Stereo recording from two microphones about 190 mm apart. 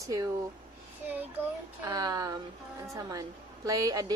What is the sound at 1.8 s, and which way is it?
Speech, 20° right (ahead or behind).